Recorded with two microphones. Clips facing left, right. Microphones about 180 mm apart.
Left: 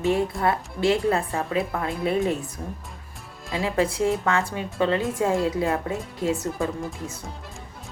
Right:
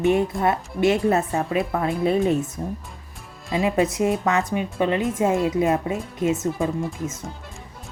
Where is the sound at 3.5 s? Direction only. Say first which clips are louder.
Right 3 dB; 20° right (ahead or behind).